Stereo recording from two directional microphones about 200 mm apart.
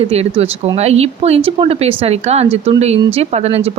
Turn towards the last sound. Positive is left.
turn(degrees=-30)  # may be behind; listen again after turning